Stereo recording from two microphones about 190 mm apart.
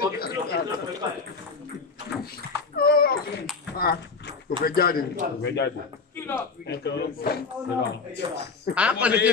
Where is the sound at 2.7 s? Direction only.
50° left (ahead or behind).